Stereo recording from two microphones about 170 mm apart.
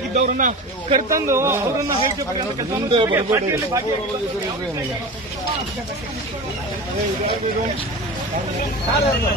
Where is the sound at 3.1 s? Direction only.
15° right (ahead or behind).